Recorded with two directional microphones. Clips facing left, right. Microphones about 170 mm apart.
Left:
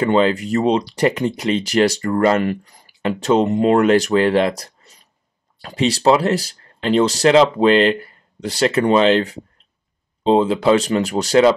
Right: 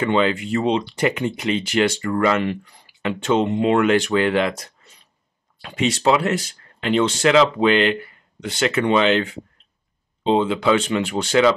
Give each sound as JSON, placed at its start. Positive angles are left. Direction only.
{"t": 0.0, "sound": "speech", "side_deg": 40}